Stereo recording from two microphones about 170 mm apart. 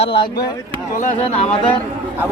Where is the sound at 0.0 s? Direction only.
30° left (ahead or behind).